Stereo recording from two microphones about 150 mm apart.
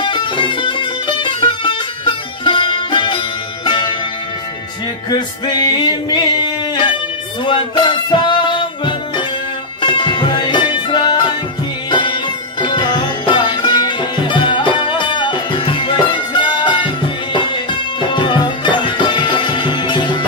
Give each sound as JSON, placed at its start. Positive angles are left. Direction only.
{"t": 0.0, "sound": "music", "side_deg": 30}
{"t": 5.1, "sound": "music", "side_deg": 25}